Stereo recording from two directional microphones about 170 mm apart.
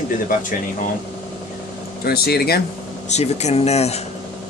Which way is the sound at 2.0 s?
65° left (ahead or behind).